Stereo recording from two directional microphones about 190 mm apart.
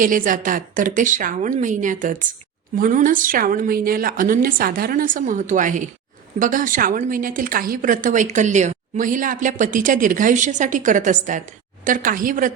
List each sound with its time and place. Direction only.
0.0 s a woman's voice: 45° right (ahead or behind)